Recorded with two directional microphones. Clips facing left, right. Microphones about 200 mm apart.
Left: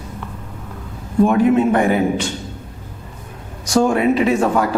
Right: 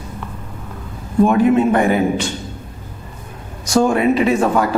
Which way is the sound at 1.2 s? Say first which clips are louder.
Right 1 dB; 5° right (ahead or behind).